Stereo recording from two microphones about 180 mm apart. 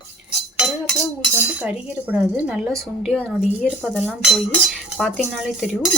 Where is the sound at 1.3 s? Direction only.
10° right (ahead or behind).